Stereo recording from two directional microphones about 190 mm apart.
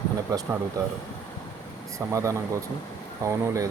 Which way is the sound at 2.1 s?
15° right (ahead or behind).